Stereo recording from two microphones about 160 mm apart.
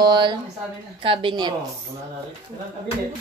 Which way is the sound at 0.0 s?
30° right (ahead or behind).